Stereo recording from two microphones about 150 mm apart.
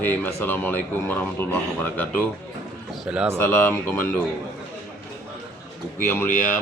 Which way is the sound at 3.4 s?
10° left (ahead or behind).